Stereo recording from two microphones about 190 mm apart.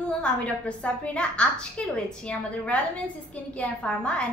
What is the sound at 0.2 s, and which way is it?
A woman's voice, 5° left (ahead or behind).